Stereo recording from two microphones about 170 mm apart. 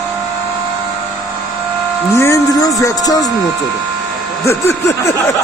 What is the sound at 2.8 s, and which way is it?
Speech, 20° left (ahead or behind).